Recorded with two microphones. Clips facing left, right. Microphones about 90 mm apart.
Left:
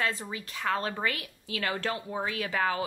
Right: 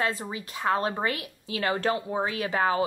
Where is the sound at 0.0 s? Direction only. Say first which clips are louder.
Right 3 dB; 20° right (ahead or behind).